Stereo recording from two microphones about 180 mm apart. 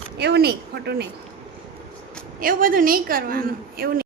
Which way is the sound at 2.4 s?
50° right (ahead or behind).